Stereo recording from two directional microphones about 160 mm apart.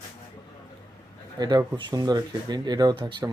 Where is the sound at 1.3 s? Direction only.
25° right (ahead or behind).